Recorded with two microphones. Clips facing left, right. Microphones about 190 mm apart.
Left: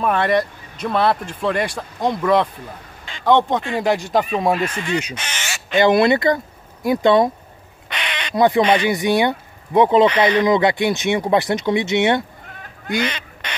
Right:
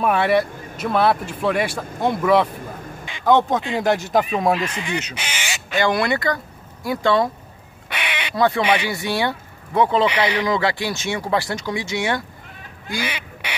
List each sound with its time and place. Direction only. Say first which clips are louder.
0.0 s a man's voice: even; 5° right (ahead or behind)
4.7 s speech: left 4 dB; 15° right (ahead or behind)
5.1 s duck: even; 10° right (ahead or behind)
5.8 s speech: left 6 dB; 20° left (ahead or behind)
7.9 s duck: even; 5° right (ahead or behind)
8.4 s speech: left 4 dB; 15° left (ahead or behind)
10.0 s speech: left 5 dB; 10° right (ahead or behind)
10.4 s speech: left 5 dB; 20° left (ahead or behind)
13.0 s duck: left 3 dB; 10° right (ahead or behind)